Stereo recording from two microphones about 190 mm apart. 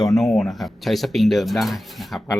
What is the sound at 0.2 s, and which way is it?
Speech, centre (ahead or behind).